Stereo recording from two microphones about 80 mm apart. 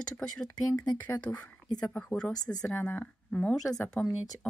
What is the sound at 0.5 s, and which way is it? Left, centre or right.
Speech, left.